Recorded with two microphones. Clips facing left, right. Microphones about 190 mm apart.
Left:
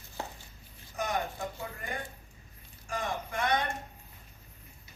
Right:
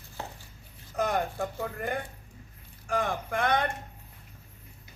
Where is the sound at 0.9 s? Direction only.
60° right (ahead or behind).